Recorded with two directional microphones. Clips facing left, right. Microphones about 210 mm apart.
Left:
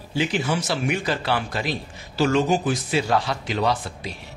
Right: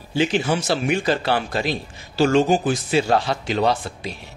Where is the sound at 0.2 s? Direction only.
30° right (ahead or behind).